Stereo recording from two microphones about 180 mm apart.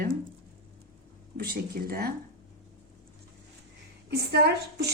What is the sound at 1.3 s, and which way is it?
Speech, 55° right (ahead or behind).